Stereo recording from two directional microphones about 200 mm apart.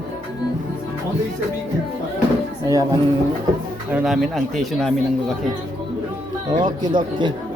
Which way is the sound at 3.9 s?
Centre (ahead or behind).